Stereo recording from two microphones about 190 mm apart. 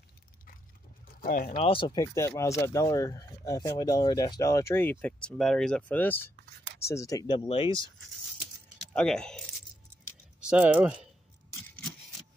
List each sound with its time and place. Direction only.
1.2 s speech: 50° left (ahead or behind)
1.6 s speech: 25° left (ahead or behind)
7.4 s speech: 30° left (ahead or behind)
8.9 s speech: 5° left (ahead or behind)
10.4 s speech: 5° right (ahead or behind)